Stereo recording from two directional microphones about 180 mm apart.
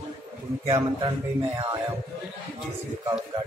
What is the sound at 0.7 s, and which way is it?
Music, 25° right (ahead or behind).